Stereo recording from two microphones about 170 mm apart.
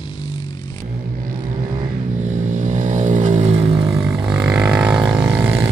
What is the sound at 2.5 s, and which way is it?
Vehicle, 50° right (ahead or behind).